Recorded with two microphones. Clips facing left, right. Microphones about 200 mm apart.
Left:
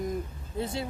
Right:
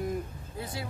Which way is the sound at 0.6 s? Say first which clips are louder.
Left 6 dB; 25° left (ahead or behind).